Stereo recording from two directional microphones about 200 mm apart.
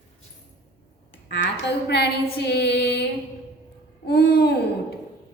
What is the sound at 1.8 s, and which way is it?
Female singing, 55° left (ahead or behind).